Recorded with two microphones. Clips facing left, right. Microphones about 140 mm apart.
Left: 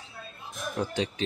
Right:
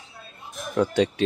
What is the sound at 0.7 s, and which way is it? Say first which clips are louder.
Speech: right 9 dB; 70° right (ahead or behind).